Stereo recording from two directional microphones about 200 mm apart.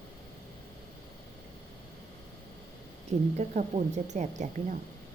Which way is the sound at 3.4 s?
35° right (ahead or behind).